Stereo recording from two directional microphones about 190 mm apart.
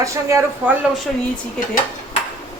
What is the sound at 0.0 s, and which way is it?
Speech, 15° right (ahead or behind).